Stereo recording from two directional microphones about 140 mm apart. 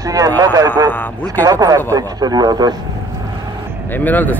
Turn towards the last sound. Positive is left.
turn(degrees=15)  # may be behind; listen again after turning